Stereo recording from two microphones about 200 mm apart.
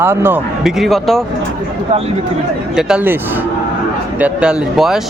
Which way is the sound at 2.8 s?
5° right (ahead or behind).